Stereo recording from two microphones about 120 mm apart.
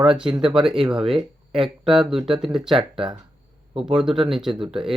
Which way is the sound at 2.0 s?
50° right (ahead or behind).